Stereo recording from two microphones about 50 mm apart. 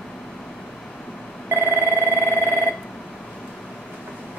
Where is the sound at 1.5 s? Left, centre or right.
Right.